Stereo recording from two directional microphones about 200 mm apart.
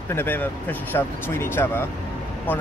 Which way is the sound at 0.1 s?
10° left (ahead or behind).